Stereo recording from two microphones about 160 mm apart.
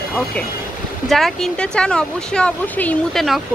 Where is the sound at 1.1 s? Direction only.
Centre (ahead or behind).